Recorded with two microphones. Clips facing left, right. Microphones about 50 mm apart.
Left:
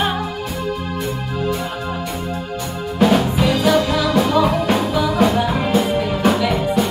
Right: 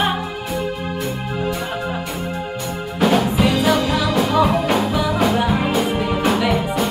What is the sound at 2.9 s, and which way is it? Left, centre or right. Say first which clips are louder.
Music: left 1 dB; centre.